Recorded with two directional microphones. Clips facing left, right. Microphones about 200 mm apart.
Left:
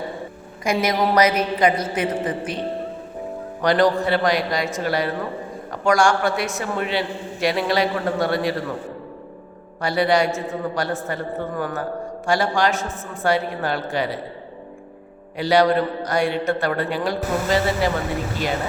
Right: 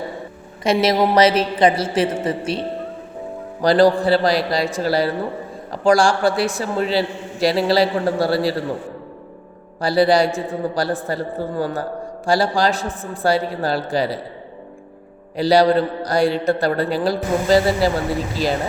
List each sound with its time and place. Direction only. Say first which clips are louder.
0.6 s a woman's voice: right 4 dB; 25° right (ahead or behind)
3.6 s a man's voice: right 4 dB; 35° right (ahead or behind)
9.8 s a man's voice: right 4 dB; 35° right (ahead or behind)
15.4 s a man's voice: right 3 dB; 35° right (ahead or behind)